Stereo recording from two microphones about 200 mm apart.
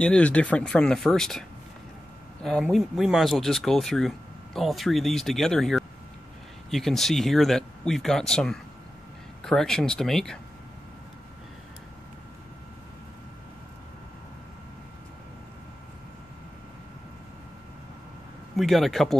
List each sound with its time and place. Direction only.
0.0 s speech: 5° left (ahead or behind)
2.4 s speech: centre (ahead or behind)
18.6 s speech: centre (ahead or behind)